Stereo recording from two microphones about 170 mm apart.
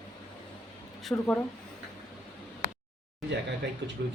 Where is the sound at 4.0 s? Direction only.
70° right (ahead or behind).